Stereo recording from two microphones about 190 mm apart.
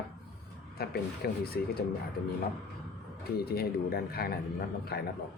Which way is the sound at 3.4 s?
55° left (ahead or behind).